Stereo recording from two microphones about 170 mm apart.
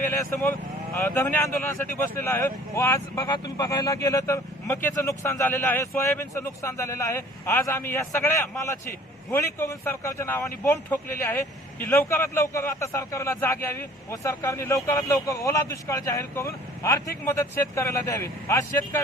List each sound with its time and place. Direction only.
0.0 s speech: 15° left (ahead or behind)